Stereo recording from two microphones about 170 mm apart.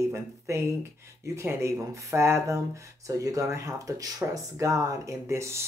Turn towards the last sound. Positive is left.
turn(degrees=-15)  # may be behind; listen again after turning